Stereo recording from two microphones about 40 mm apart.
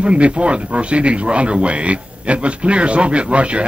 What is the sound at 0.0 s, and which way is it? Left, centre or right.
A man's voice, right.